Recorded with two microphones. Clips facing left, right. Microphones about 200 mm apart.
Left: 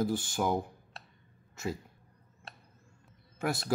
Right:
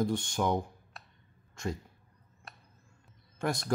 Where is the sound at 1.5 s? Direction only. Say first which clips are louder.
Even; 5° left (ahead or behind).